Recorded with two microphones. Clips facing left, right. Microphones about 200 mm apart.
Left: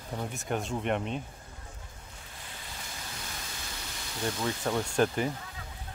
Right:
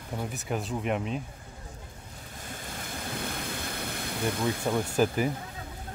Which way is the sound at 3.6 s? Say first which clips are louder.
Right 8 dB; 55° right (ahead or behind).